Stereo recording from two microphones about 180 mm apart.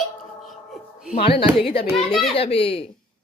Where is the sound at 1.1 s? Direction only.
30° left (ahead or behind).